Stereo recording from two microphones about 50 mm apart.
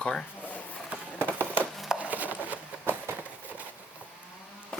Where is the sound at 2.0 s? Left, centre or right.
Right.